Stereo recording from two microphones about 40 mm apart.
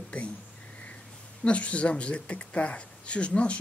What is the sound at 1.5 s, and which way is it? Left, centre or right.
Speech, left.